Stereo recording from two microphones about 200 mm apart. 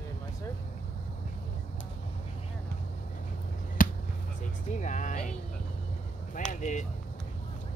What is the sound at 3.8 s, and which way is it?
Basketball bounce, 45° left (ahead or behind).